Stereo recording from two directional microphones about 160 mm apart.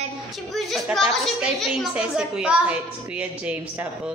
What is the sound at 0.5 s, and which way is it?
A woman's voice, centre (ahead or behind).